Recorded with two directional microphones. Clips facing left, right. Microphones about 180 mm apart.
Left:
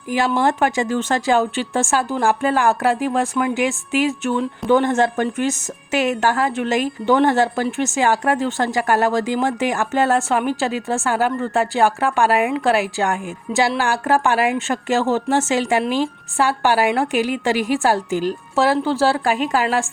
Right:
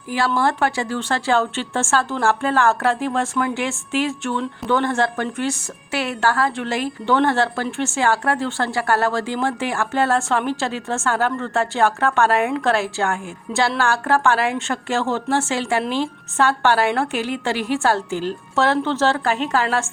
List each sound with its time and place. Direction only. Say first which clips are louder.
0.1 s speech: left 2 dB; 15° left (ahead or behind)